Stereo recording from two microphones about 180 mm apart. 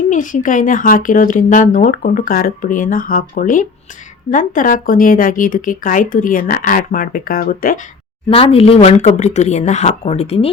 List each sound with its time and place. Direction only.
0.1 s speech: 45° left (ahead or behind)
8.4 s speech: 35° left (ahead or behind)